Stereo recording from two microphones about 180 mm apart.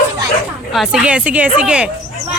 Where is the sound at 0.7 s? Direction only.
5° right (ahead or behind).